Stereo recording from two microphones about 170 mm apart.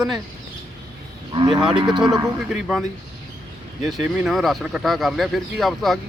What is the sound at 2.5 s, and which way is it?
Speech, centre (ahead or behind).